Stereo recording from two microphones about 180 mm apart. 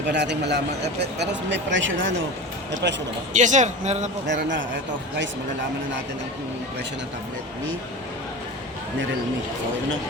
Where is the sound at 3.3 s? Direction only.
45° right (ahead or behind).